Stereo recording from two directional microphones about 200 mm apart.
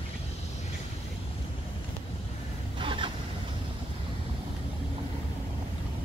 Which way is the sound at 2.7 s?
25° right (ahead or behind).